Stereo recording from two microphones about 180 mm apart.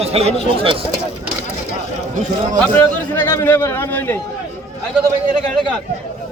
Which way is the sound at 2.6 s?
10° left (ahead or behind).